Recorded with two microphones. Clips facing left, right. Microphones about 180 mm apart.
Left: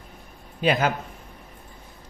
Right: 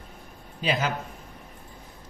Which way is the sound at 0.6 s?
55° left (ahead or behind).